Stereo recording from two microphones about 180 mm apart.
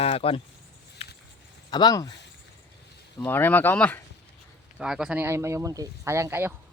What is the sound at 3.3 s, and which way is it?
Speech, 10° left (ahead or behind).